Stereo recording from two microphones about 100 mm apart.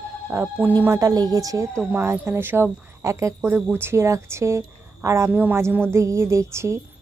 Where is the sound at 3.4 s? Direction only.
20° right (ahead or behind).